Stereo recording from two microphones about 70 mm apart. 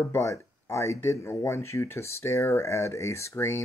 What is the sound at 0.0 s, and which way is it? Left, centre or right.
Speech, left.